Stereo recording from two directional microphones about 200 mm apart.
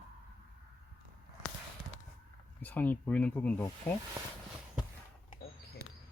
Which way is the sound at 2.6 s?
10° left (ahead or behind).